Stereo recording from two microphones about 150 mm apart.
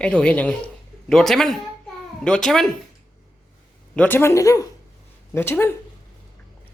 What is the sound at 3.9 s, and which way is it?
Speech, 10° left (ahead or behind).